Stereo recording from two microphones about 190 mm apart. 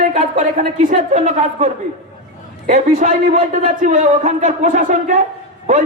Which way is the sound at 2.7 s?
40° right (ahead or behind).